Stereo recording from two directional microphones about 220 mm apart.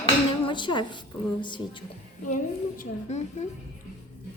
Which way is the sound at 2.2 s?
35° left (ahead or behind).